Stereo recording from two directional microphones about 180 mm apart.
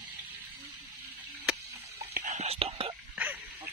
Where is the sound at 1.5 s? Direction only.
5° right (ahead or behind).